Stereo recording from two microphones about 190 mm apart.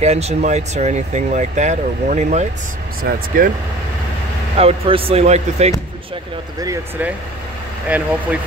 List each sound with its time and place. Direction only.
0.0 s speech: 35° right (ahead or behind)
3.0 s speech: 50° right (ahead or behind)
4.6 s speech: 30° right (ahead or behind)
6.6 s speech: 10° right (ahead or behind)